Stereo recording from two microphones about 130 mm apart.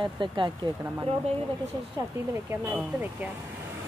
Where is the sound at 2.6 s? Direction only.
15° right (ahead or behind).